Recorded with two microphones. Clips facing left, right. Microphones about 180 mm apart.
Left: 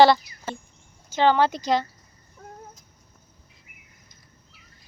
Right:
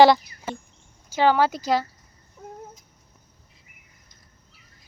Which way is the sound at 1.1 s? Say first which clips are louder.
Even; 10° right (ahead or behind).